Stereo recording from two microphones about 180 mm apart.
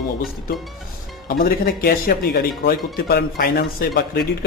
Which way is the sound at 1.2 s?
55° left (ahead or behind).